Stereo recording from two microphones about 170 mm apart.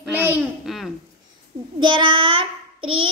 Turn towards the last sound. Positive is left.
turn(degrees=-35)  # may be behind; listen again after turning